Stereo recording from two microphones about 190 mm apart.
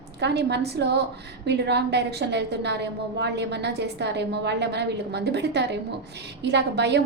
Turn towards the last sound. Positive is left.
turn(degrees=-65)  # may be behind; listen again after turning